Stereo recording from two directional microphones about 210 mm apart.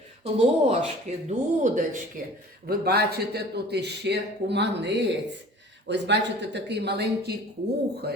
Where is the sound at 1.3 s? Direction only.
35° right (ahead or behind).